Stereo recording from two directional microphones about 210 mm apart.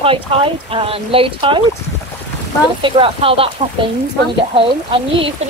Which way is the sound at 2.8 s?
25° right (ahead or behind).